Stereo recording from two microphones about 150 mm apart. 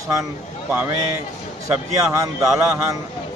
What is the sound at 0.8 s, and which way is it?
Speech, 20° right (ahead or behind).